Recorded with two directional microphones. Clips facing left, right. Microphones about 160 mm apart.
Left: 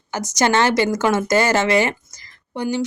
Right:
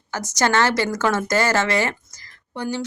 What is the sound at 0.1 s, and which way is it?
Speech, 15° left (ahead or behind).